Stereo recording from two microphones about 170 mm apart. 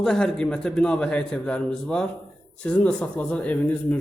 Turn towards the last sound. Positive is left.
turn(degrees=10)  # may be behind; listen again after turning